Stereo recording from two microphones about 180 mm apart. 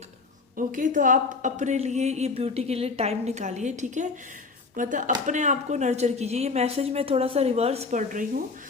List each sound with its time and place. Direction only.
0.5 s a woman's voice: 45° right (ahead or behind)